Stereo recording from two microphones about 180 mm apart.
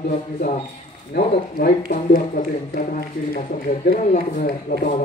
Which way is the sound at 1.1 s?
65° left (ahead or behind).